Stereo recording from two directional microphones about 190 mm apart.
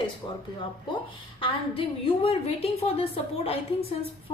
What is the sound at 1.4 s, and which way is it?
A woman's voice, 25° left (ahead or behind).